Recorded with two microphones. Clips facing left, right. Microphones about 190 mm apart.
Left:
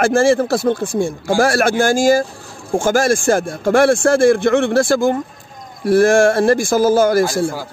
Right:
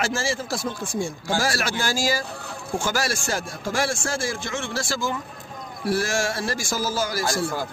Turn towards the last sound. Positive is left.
turn(degrees=55)  # may be behind; listen again after turning